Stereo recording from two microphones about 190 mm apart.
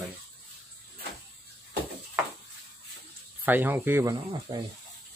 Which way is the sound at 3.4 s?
10° right (ahead or behind).